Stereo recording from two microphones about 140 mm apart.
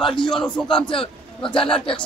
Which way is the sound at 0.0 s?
35° left (ahead or behind).